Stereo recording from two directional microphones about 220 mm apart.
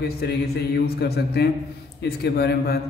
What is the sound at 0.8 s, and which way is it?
Mantra, 45° left (ahead or behind).